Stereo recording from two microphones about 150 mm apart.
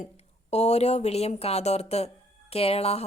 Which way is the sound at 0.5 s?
45° left (ahead or behind).